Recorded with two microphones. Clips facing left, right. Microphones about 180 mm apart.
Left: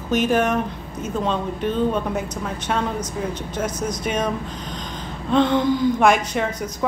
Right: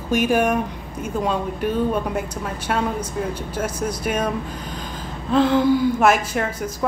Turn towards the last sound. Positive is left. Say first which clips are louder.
# even
turn(degrees=-5)  # may be behind; listen again after turning